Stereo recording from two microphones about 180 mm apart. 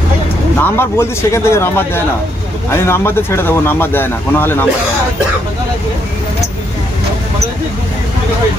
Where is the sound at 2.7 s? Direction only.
15° left (ahead or behind).